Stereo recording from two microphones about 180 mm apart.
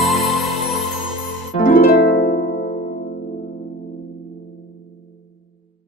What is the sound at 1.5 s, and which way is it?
Harp, 55° left (ahead or behind).